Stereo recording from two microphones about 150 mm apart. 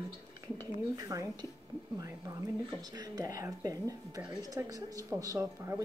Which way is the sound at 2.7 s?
25° right (ahead or behind).